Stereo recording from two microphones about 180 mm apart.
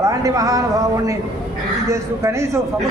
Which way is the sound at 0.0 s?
20° right (ahead or behind).